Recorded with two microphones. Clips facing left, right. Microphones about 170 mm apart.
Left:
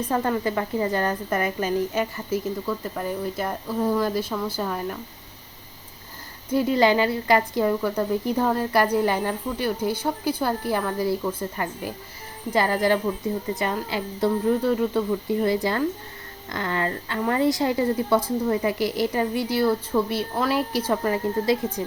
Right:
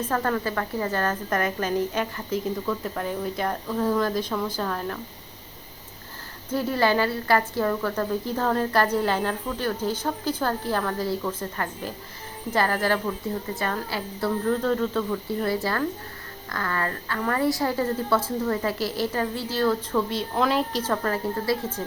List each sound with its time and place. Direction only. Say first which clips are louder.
0.0 s a woman's voice: left 2 dB; 15° left (ahead or behind)
6.5 s a woman's voice: left 3 dB; 15° left (ahead or behind)